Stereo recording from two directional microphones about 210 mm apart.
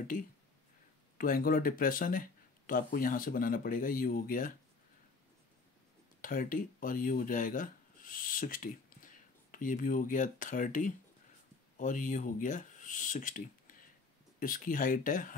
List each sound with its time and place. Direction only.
1.1 s speech: 45° left (ahead or behind)
6.2 s speech: 40° left (ahead or behind)